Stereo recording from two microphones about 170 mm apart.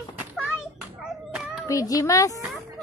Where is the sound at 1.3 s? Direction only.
5° right (ahead or behind).